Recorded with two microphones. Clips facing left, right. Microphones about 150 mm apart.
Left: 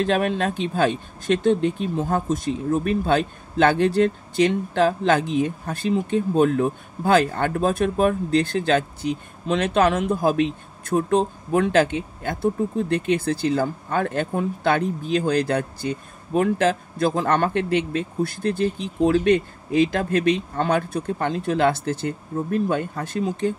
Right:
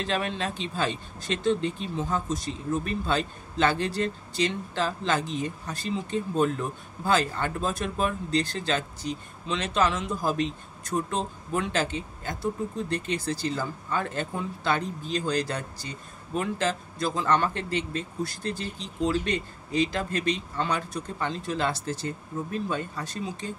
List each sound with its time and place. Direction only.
0.0 s speech: 50° left (ahead or behind)